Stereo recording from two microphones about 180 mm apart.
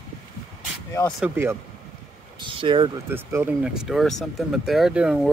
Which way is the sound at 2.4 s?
25° right (ahead or behind).